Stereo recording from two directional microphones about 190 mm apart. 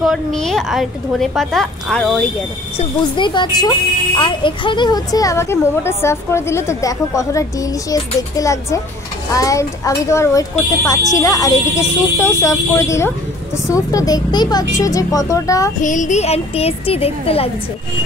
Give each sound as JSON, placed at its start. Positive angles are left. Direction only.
{"t": 0.0, "sound": "a woman's voice", "side_deg": 0}
{"t": 3.2, "sound": "a woman's voice", "side_deg": 25}
{"t": 15.8, "sound": "a woman's voice", "side_deg": 40}